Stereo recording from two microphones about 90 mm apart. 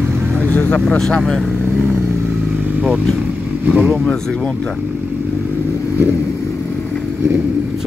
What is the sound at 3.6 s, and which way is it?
Speech, 20° right (ahead or behind).